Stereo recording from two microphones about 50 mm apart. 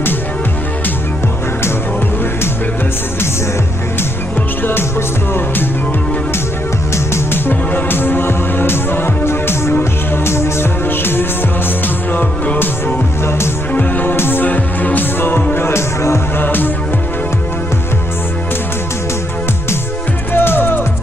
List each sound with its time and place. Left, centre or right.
7.2 s music: left
10.9 s music: left
12.1 s music: left
13.7 s music: left
14.1 s music: left
14.4 s music: left
20.3 s music: left